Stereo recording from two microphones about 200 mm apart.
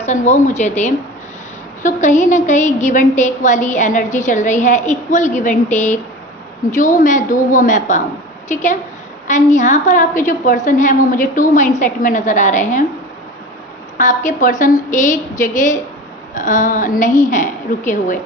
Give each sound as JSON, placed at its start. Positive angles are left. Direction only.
{"t": 0.0, "sound": "a woman's voice", "side_deg": 35}
{"t": 14.0, "sound": "a woman's voice", "side_deg": 40}